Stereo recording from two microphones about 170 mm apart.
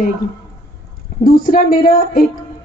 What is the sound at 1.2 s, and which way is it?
A woman's voice, 60° left (ahead or behind).